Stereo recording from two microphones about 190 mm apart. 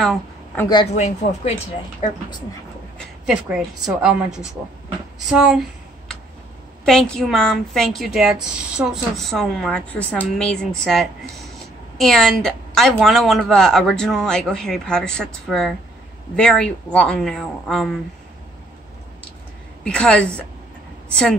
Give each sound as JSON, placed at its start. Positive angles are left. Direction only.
{"t": 0.0, "sound": "a sound", "side_deg": 0}
{"t": 0.9, "sound": "speech", "side_deg": 35}
{"t": 3.0, "sound": "a woman's voice", "side_deg": -5}
{"t": 5.3, "sound": "a sound", "side_deg": -5}
{"t": 6.9, "sound": "a woman's voice", "side_deg": 0}
{"t": 19.8, "sound": "a woman's voice", "side_deg": 5}